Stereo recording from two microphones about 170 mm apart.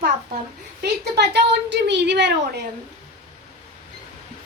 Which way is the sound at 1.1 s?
90° right.